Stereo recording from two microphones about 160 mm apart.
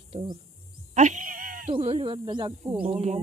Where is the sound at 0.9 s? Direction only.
50° right (ahead or behind).